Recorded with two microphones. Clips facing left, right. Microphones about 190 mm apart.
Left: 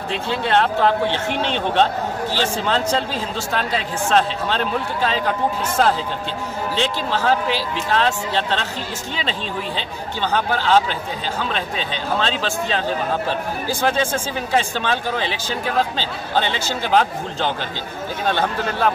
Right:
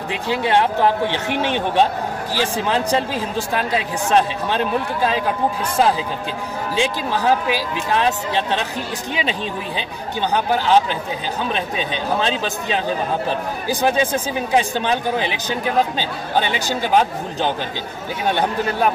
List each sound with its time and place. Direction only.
0.1 s speech: 15° right (ahead or behind)
6.7 s speech: 15° right (ahead or behind)